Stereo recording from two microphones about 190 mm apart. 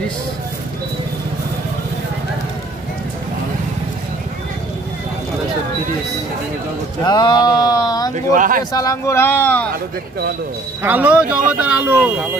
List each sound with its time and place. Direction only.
7.1 s speech: 25° left (ahead or behind)
8.3 s speech: 45° right (ahead or behind)
8.7 s speech: 15° left (ahead or behind)
10.8 s speech: 10° right (ahead or behind)